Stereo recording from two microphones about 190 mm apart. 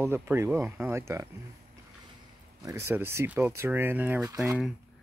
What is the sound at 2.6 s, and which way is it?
Speech, 15° right (ahead or behind).